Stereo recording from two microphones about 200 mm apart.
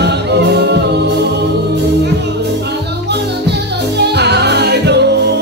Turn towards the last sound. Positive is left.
turn(degrees=-55)  # may be behind; listen again after turning